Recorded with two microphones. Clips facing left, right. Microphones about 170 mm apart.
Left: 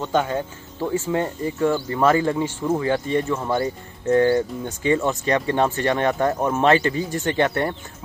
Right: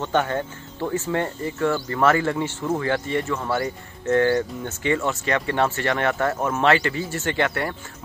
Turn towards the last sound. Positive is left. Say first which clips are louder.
# left 3 dB
turn(degrees=20)  # may be behind; listen again after turning